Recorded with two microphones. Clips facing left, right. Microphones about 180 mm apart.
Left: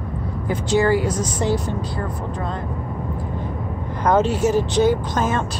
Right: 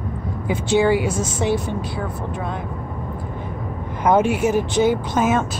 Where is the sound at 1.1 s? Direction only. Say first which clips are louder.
Right 1 dB; 25° right (ahead or behind).